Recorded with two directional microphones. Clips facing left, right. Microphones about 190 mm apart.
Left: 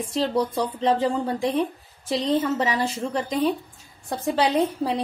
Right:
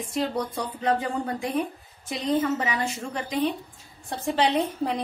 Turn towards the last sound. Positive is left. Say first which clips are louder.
# left 3 dB
turn(degrees=35)  # may be behind; listen again after turning